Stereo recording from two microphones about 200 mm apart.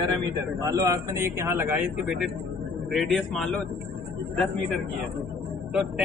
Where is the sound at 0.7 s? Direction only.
15° right (ahead or behind); by 3.5 s centre (ahead or behind).